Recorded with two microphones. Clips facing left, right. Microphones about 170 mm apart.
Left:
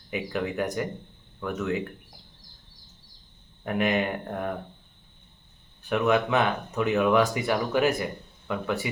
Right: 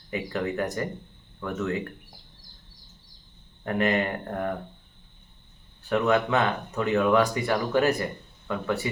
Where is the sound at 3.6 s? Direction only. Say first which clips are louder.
Right 1 dB; 10° left (ahead or behind).